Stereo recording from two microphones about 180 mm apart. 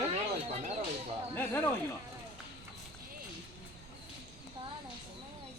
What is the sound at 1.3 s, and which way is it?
Speech, 10° left (ahead or behind).